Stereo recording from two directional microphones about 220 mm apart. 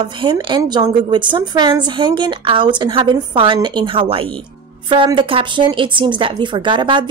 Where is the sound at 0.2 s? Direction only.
20° right (ahead or behind).